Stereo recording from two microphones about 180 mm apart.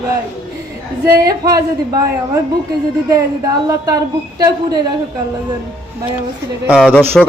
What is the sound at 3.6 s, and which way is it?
Speech, 20° right (ahead or behind).